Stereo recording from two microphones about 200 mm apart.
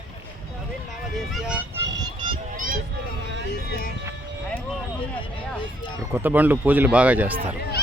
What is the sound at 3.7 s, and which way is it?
Speech, 45° left (ahead or behind).